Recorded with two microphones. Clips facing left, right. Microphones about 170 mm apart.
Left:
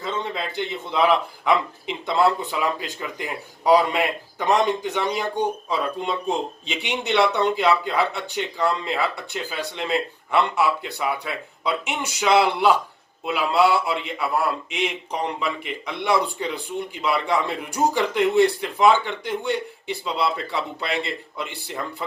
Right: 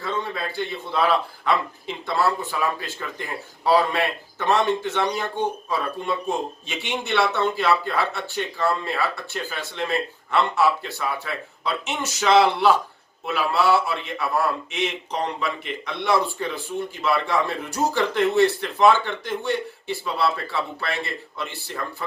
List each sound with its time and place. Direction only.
0.0 s speech: 20° left (ahead or behind)